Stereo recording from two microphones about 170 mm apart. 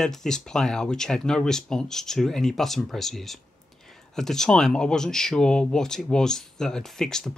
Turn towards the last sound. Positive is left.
turn(degrees=5)  # may be behind; listen again after turning